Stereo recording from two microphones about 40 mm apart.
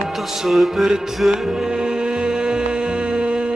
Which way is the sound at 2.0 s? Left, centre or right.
Right.